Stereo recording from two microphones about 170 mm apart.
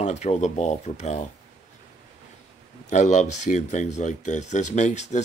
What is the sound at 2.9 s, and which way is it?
Speech, 45° left (ahead or behind).